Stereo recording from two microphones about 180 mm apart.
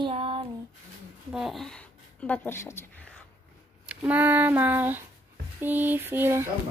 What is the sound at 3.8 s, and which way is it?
Speech, 10° right (ahead or behind).